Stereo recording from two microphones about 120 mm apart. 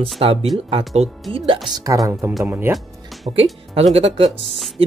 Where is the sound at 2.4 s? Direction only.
15° right (ahead or behind).